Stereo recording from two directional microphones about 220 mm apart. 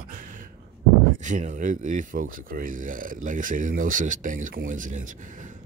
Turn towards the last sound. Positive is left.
turn(degrees=-35)  # may be behind; listen again after turning